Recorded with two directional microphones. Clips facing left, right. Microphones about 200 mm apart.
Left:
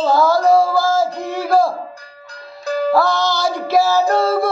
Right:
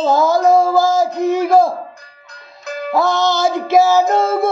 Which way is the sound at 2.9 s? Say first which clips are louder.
Right 5 dB; 20° right (ahead or behind).